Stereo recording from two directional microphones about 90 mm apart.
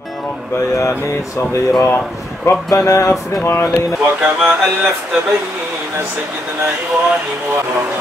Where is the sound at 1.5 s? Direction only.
35° left (ahead or behind).